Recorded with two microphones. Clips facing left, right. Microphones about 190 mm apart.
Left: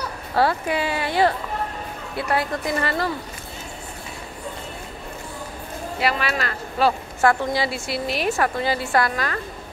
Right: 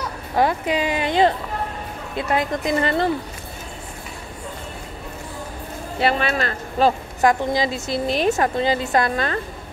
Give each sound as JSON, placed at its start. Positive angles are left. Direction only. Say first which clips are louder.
{"t": 0.4, "sound": "a woman's voice", "louder": "right 1 dB", "side_deg": -15}
{"t": 5.9, "sound": "a woman's voice", "louder": "right 3 dB", "side_deg": -25}
{"t": 7.2, "sound": "a woman's voice", "louder": "right 1 dB", "side_deg": -15}